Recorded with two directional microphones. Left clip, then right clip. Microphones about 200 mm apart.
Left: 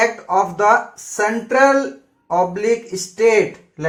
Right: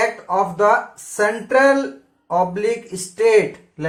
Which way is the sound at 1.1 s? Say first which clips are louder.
Left 1 dB; 25° left (ahead or behind).